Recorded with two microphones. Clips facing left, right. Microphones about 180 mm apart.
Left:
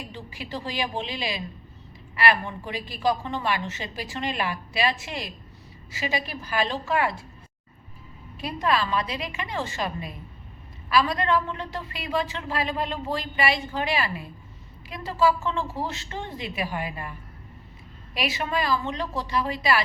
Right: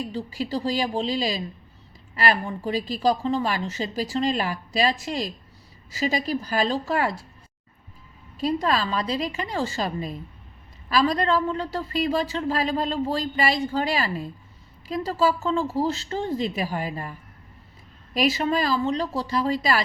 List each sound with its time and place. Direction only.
0.0 s a woman's voice: 35° right (ahead or behind)
8.4 s a woman's voice: 35° right (ahead or behind)
18.1 s a woman's voice: 40° right (ahead or behind)